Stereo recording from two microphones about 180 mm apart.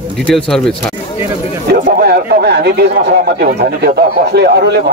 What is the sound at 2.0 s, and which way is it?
A man's voice, 60° right (ahead or behind).